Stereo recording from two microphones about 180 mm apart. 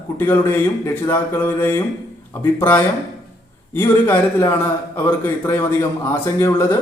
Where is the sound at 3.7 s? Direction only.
10° left (ahead or behind).